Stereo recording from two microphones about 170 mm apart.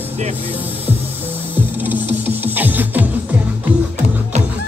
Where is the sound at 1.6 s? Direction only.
10° right (ahead or behind).